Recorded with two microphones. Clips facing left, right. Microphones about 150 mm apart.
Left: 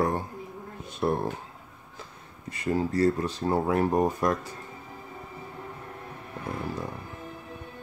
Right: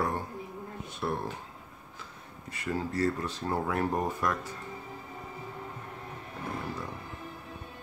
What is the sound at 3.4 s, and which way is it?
Speech, 25° left (ahead or behind).